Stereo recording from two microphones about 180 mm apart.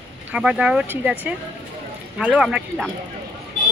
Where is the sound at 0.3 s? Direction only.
5° right (ahead or behind).